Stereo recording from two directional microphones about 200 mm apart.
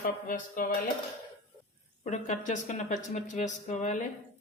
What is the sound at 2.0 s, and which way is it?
Speech, 40° left (ahead or behind).